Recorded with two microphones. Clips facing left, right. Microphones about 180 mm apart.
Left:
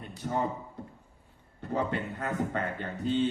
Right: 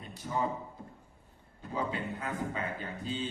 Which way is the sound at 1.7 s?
65° left (ahead or behind).